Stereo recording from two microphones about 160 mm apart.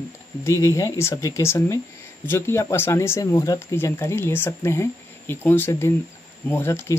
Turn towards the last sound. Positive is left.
turn(degrees=15)  # may be behind; listen again after turning